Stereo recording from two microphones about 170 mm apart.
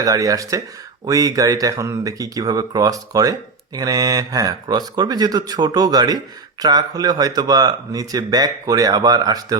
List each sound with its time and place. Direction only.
0.0 s speech: 20° right (ahead or behind)